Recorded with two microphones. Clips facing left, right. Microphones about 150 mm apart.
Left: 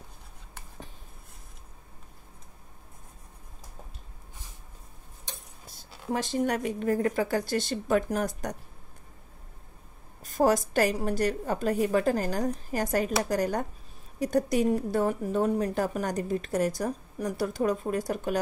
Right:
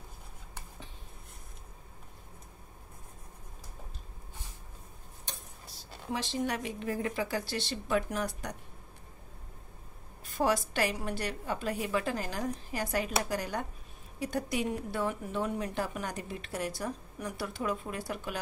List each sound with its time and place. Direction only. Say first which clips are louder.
6.1 s a woman's voice: left 6 dB; 50° left (ahead or behind)
10.2 s a woman's voice: left 6 dB; 40° left (ahead or behind)